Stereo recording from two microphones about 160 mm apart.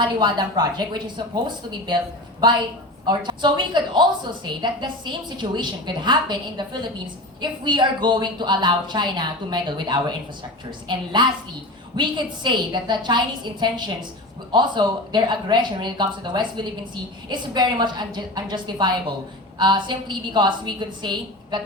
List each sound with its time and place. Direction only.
0.0 s speech: 30° right (ahead or behind)
3.1 s speech: 30° right (ahead or behind)